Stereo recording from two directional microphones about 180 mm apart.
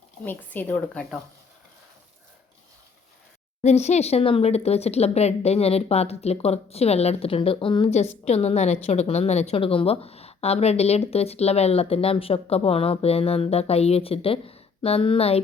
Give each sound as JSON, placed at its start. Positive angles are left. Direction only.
{"t": 0.3, "sound": "a woman's voice", "side_deg": 10}
{"t": 3.6, "sound": "a woman's voice", "side_deg": 40}